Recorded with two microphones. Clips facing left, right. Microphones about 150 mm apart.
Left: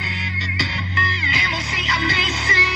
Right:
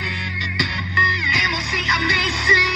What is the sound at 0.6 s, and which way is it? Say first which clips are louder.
Music: right 1 dB; 15° left (ahead or behind).